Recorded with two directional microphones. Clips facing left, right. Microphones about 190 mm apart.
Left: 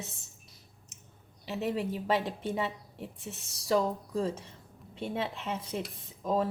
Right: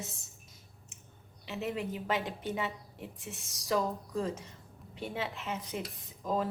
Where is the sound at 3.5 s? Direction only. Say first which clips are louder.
Left 4 dB; 30° left (ahead or behind).